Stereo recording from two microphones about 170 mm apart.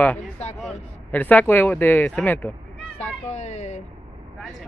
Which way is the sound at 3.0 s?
40° left (ahead or behind).